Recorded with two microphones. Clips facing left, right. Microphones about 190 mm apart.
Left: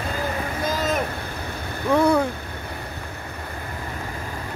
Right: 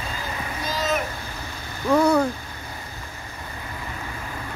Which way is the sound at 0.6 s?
50° left (ahead or behind).